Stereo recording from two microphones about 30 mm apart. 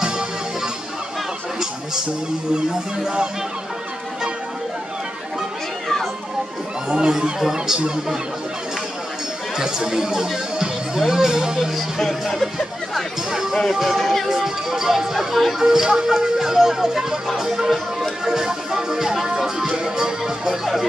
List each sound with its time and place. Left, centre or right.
2.5 s music: right
6.9 s music: right
9.6 s speech: centre
12.3 s speech: centre
13.3 s speech: centre
13.9 s speech: centre
14.2 s speech: centre
15.6 s speech: centre
18.2 s music: centre